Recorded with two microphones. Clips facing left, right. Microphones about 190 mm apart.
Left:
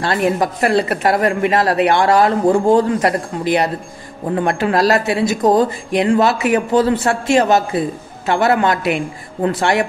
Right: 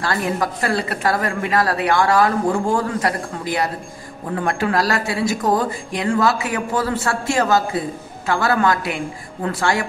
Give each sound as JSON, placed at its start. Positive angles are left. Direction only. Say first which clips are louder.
{"t": 0.0, "sound": "speech", "louder": "left 5 dB", "side_deg": 20}